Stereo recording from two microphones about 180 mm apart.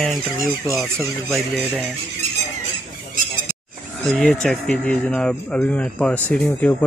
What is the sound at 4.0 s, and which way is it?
Speech, 5° left (ahead or behind).